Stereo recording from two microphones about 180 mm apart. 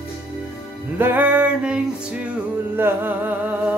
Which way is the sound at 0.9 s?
10° right (ahead or behind).